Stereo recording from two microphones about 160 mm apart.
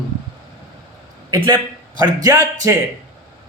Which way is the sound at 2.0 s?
25° right (ahead or behind).